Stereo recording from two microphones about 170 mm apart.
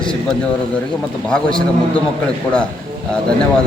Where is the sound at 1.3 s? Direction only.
5° left (ahead or behind).